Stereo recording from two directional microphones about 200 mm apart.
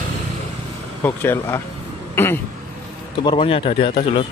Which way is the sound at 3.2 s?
25° left (ahead or behind).